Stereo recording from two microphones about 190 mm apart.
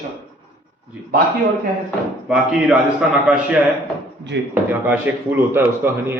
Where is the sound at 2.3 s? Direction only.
5° right (ahead or behind).